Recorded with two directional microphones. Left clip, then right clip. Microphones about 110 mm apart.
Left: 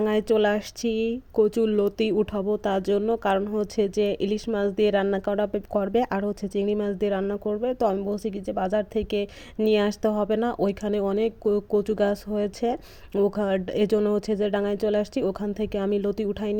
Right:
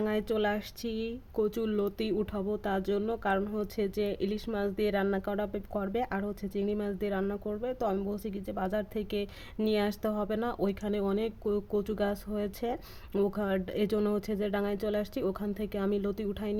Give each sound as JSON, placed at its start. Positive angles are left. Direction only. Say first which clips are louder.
{"t": 0.0, "sound": "speech", "louder": "left 9 dB", "side_deg": 45}